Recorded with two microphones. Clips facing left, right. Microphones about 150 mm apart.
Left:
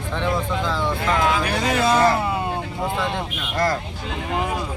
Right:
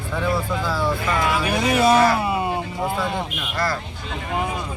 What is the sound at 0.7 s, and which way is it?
Speech, 10° right (ahead or behind).